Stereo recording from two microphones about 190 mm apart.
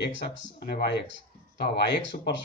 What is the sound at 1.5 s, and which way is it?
Speech, 60° left (ahead or behind).